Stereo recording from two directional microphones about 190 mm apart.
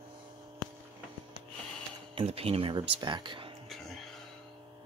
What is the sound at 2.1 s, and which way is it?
Speech, 30° right (ahead or behind).